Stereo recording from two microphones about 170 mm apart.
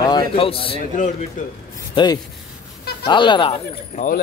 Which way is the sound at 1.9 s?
25° left (ahead or behind).